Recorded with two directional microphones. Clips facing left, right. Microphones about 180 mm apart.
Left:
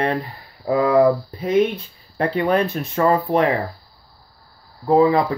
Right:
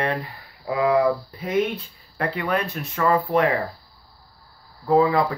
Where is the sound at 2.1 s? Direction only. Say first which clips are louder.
Left 6 dB; 30° left (ahead or behind).